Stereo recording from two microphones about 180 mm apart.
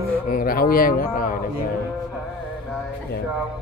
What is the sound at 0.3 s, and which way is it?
A man's voice, 50° left (ahead or behind).